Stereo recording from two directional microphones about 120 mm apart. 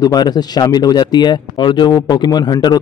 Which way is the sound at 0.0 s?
35° left (ahead or behind).